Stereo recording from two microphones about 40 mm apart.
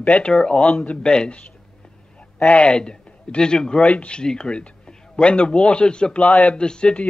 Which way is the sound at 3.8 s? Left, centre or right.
Left.